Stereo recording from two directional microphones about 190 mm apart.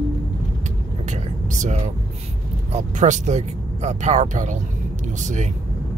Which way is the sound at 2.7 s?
40° right (ahead or behind).